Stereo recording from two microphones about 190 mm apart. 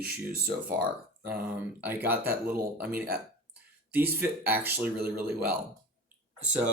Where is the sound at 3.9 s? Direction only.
10° right (ahead or behind).